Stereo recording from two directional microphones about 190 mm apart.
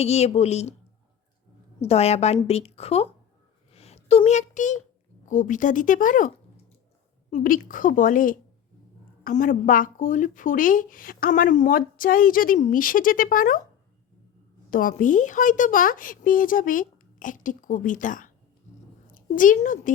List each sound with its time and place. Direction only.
0.0 s a woman's voice: 35° left (ahead or behind)
1.8 s a woman's voice: 35° left (ahead or behind)
3.7 s a sound: 35° left (ahead or behind)
5.2 s speech: 40° left (ahead or behind)
14.7 s a woman's voice: 45° left (ahead or behind)